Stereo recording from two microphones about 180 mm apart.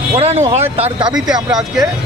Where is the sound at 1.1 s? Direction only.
5° right (ahead or behind).